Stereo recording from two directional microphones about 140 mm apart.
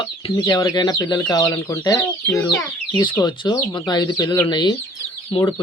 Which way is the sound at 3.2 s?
30° left (ahead or behind).